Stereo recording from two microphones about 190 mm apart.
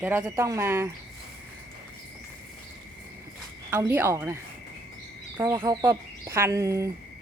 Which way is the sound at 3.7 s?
10° right (ahead or behind).